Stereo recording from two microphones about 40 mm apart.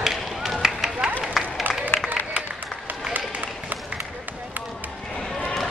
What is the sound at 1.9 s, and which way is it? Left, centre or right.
Applause, left.